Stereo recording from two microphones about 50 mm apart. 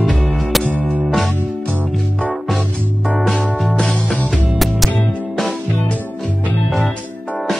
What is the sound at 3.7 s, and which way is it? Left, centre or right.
Music, centre.